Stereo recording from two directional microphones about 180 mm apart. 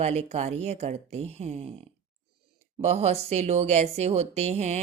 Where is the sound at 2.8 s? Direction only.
35° right (ahead or behind).